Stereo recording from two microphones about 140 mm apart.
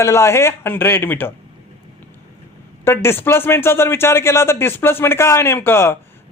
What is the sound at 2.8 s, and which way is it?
Speech, 15° left (ahead or behind).